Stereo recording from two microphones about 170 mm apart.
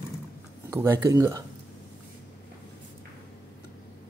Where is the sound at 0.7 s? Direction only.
15° right (ahead or behind).